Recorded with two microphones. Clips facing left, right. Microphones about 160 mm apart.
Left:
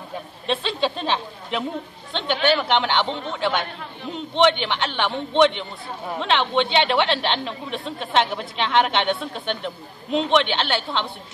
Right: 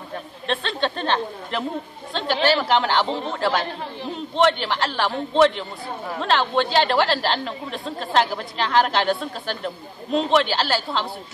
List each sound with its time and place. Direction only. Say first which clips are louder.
0.5 s a woman's voice: left 1 dB; 5° left (ahead or behind)
3.1 s a man's voice: right 2 dB; 35° right (ahead or behind)
3.3 s a woman's voice: even; centre (ahead or behind)